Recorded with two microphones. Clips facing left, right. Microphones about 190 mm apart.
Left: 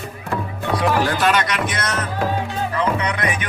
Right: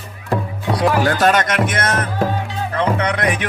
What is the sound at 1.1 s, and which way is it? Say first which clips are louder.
Speech: right 4 dB; 45° right (ahead or behind).